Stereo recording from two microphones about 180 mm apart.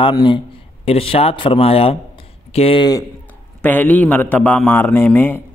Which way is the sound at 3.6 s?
10° left (ahead or behind).